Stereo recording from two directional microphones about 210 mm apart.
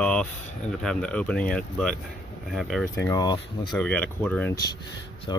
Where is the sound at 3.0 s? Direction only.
20° left (ahead or behind).